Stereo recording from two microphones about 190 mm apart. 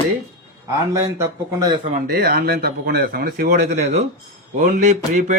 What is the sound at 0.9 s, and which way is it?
Speech, 15° right (ahead or behind).